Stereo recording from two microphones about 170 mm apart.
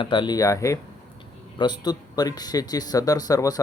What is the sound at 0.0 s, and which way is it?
Speech, 25° left (ahead or behind).